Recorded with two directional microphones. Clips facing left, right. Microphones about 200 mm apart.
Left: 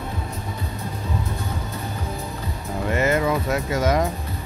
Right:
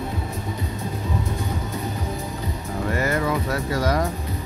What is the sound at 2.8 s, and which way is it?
Music, 20° left (ahead or behind).